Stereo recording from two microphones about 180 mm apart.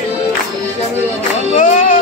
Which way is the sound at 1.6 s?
45° left (ahead or behind).